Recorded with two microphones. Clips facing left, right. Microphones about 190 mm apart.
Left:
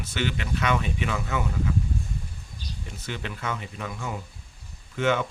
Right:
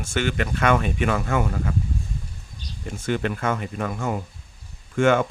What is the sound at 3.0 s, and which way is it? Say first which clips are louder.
Speech: right 10 dB; 50° right (ahead or behind).